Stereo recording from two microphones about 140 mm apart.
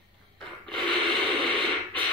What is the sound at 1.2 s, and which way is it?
Radio, 35° right (ahead or behind).